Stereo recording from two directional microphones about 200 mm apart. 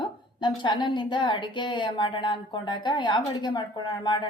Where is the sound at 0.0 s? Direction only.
20° left (ahead or behind).